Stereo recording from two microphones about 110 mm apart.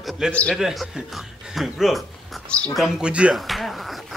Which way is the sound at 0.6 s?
5° right (ahead or behind).